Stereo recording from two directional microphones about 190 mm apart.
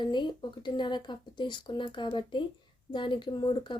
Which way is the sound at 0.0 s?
25° left (ahead or behind).